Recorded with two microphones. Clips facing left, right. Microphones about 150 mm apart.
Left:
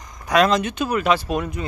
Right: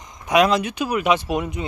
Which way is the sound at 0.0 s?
20° right (ahead or behind).